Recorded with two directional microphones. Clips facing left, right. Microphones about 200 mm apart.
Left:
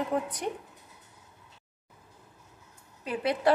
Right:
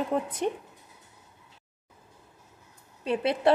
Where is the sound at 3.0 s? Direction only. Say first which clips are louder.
Right 3 dB; 25° right (ahead or behind).